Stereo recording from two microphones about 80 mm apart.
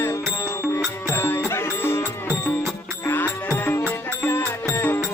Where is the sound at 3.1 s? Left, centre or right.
Left.